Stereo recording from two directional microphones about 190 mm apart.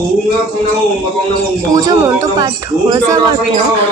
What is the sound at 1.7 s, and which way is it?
A woman's voice, 15° right (ahead or behind).